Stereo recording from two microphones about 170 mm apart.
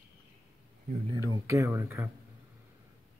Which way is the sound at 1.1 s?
20° right (ahead or behind).